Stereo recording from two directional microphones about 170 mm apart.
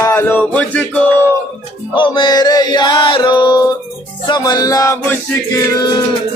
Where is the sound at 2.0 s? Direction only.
25° left (ahead or behind).